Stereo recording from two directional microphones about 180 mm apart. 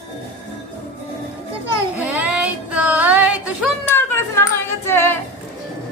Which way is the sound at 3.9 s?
15° left (ahead or behind).